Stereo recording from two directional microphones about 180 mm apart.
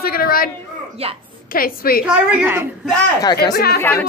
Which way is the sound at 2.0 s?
10° right (ahead or behind).